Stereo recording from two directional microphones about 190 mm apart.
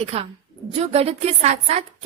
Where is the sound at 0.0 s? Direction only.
30° right (ahead or behind).